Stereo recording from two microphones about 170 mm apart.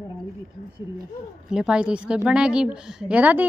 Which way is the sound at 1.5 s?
5° right (ahead or behind).